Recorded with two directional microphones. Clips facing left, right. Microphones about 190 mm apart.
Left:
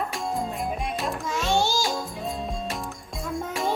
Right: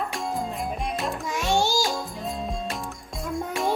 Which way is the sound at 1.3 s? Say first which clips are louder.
Right 1 dB; 15° right (ahead or behind).